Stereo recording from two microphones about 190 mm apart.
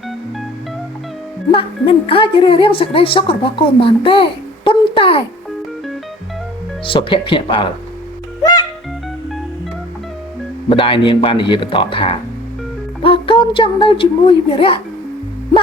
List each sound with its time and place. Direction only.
1.5 s a woman's voice: 30° left (ahead or behind)
6.8 s a woman's voice: 25° left (ahead or behind)
10.7 s a woman's voice: 25° left (ahead or behind)